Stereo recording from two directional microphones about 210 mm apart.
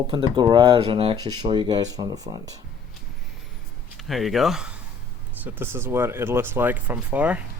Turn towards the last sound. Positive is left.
turn(degrees=-5)  # may be behind; listen again after turning